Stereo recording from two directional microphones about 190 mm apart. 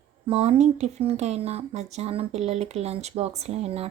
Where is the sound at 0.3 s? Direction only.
35° right (ahead or behind).